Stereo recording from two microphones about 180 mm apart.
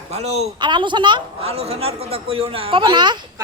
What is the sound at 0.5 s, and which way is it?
A man's voice, 25° right (ahead or behind).